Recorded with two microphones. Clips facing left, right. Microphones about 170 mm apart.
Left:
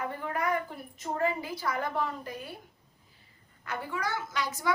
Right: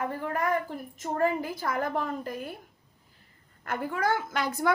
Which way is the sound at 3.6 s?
50° right (ahead or behind).